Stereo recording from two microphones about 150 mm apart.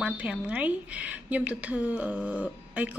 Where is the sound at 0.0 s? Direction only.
10° right (ahead or behind).